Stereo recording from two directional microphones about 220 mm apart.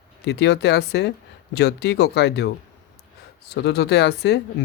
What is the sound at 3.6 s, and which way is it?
Speech, 50° left (ahead or behind).